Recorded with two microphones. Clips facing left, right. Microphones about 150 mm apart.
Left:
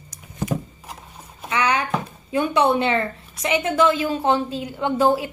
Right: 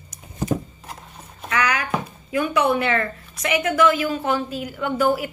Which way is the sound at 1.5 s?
25° left (ahead or behind).